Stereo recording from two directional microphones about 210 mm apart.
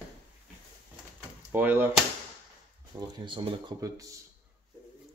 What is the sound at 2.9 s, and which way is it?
Speech, 20° right (ahead or behind).